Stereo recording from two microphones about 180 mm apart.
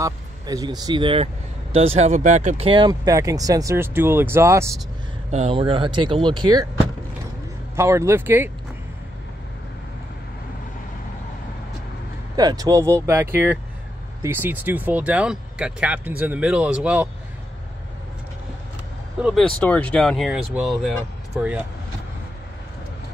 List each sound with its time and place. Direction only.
0.0 s speech: 20° right (ahead or behind)
5.3 s speech: 35° right (ahead or behind)
7.7 s speech: 15° right (ahead or behind)
12.4 s speech: 20° right (ahead or behind)
19.2 s speech: 5° right (ahead or behind)
19.6 s speech: 5° left (ahead or behind)